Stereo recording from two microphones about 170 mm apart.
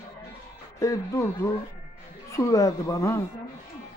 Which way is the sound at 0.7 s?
20° left (ahead or behind).